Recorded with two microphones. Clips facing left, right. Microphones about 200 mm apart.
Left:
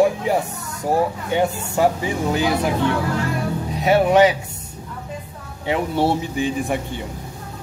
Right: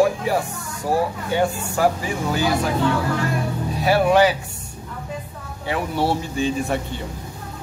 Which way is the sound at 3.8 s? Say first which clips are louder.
Left 2 dB; 20° left (ahead or behind).